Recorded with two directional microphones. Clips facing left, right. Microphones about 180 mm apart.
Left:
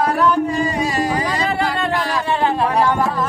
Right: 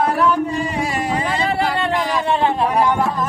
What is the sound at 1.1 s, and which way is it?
Music, 25° right (ahead or behind).